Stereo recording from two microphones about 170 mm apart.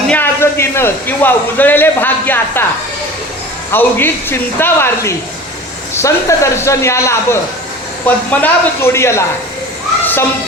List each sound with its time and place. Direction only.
0.1 s a man's voice: 10° left (ahead or behind)
3.7 s a man's voice: 10° left (ahead or behind)